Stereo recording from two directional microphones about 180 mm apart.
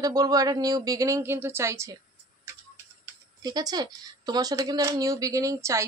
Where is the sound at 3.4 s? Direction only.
20° right (ahead or behind).